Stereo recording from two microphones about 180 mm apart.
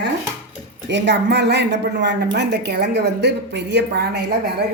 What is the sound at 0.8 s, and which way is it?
A woman's voice, 75° right (ahead or behind).